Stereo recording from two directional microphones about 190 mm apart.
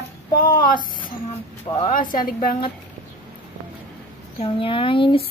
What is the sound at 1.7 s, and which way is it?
Speech, 25° left (ahead or behind).